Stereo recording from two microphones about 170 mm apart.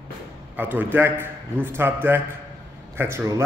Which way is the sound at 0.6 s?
10° right (ahead or behind).